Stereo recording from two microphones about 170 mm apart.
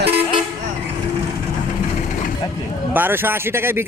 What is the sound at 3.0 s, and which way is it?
Speech, 10° right (ahead or behind).